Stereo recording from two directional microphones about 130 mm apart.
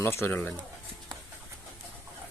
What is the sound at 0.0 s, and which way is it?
Speech, 20° left (ahead or behind).